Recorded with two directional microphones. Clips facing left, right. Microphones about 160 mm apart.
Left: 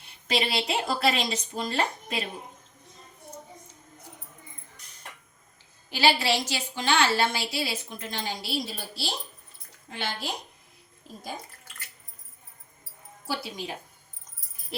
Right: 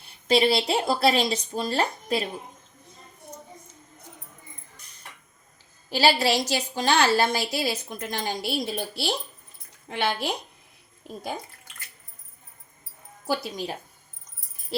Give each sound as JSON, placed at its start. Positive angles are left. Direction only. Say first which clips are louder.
{"t": 0.3, "sound": "a woman's voice", "louder": "right 7 dB", "side_deg": -35}
{"t": 5.9, "sound": "a woman's voice", "louder": "right 3 dB", "side_deg": -40}
{"t": 13.2, "sound": "a woman's voice", "louder": "right 5 dB", "side_deg": -45}
{"t": 14.7, "sound": "jingle bell", "louder": "right 6 dB", "side_deg": -30}